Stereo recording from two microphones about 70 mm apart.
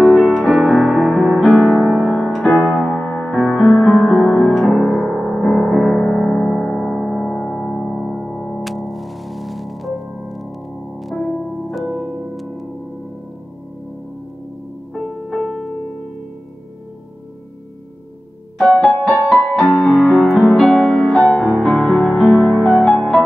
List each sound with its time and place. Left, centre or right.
0.0 s music: centre
15.0 s piano: centre
18.6 s music: centre
19.3 s music: centre